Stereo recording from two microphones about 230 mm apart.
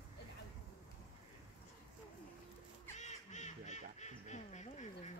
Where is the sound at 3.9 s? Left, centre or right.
Left.